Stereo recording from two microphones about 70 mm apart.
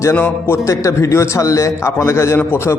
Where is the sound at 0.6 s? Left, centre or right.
Left.